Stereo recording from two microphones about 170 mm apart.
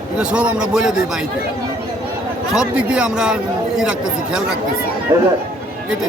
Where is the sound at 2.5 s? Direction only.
5° right (ahead or behind).